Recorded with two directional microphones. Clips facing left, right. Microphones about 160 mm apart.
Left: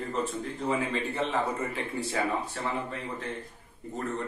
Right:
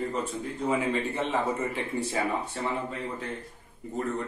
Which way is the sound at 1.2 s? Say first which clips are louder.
Even; 20° right (ahead or behind).